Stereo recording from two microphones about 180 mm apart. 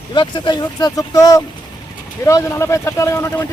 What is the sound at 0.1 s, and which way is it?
Speech, 25° left (ahead or behind).